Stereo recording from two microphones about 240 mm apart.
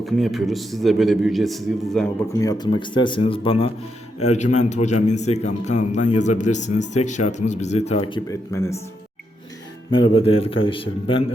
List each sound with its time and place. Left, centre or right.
0.0 s a man's voice: centre
2.4 s speech: centre
9.9 s speech: left